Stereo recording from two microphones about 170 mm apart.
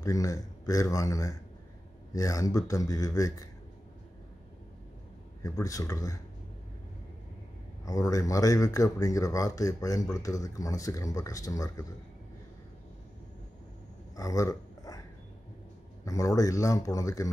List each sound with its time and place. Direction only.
0.0 s speech: 20° left (ahead or behind)
5.4 s speech: 20° left (ahead or behind)
7.8 s speech: 20° left (ahead or behind)
14.1 s a sound: 20° left (ahead or behind)
16.1 s speech: 20° left (ahead or behind)